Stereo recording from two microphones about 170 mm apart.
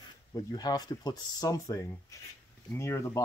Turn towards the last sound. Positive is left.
turn(degrees=15)  # may be behind; listen again after turning